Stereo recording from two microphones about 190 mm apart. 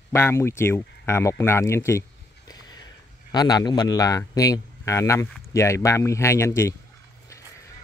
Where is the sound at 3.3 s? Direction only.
20° left (ahead or behind).